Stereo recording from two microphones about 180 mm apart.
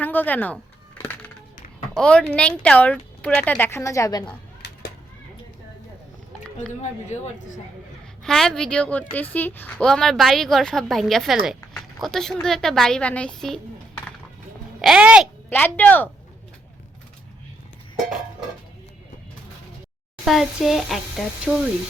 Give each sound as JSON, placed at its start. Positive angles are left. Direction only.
{"t": 0.0, "sound": "speech", "side_deg": 10}
{"t": 2.0, "sound": "speech", "side_deg": 5}
{"t": 7.1, "sound": "speech", "side_deg": 40}
{"t": 8.2, "sound": "a woman's voice", "side_deg": 5}
{"t": 14.8, "sound": "speech", "side_deg": -5}
{"t": 15.4, "sound": "speech", "side_deg": 10}
{"t": 20.2, "sound": "a woman's voice", "side_deg": 0}